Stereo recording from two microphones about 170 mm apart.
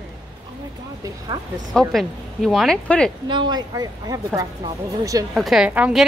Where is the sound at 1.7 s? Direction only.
Centre (ahead or behind).